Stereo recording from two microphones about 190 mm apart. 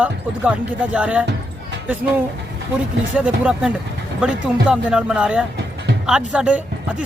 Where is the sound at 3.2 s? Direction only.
5° right (ahead or behind).